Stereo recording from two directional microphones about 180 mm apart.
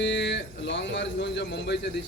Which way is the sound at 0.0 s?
80° left.